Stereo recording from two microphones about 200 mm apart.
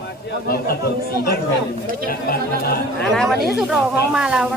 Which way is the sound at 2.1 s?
50° left (ahead or behind).